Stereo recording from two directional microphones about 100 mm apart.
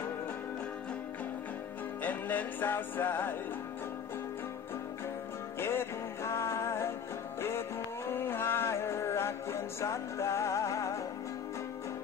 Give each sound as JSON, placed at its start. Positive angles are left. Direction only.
{"t": 2.0, "sound": "music", "side_deg": 20}
{"t": 5.6, "sound": "music", "side_deg": 25}
{"t": 8.1, "sound": "music", "side_deg": 25}